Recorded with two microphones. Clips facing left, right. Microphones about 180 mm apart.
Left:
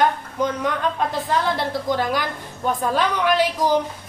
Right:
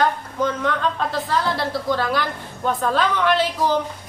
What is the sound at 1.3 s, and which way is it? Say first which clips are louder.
A woman's voice: even; 20° left (ahead or behind).